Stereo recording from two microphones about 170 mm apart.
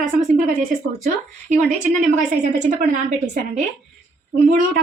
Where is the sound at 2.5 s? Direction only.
45° right (ahead or behind).